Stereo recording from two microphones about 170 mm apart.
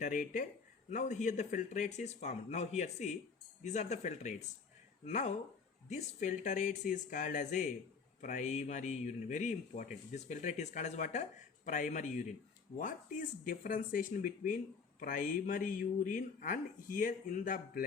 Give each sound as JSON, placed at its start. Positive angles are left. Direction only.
{"t": 0.0, "sound": "speech", "side_deg": 50}